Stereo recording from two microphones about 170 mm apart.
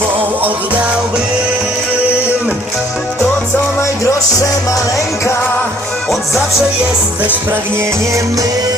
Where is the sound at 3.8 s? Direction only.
15° left (ahead or behind).